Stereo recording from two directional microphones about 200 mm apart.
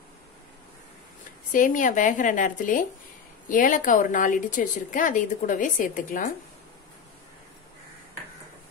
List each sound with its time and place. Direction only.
1.5 s a woman's voice: 40° left (ahead or behind)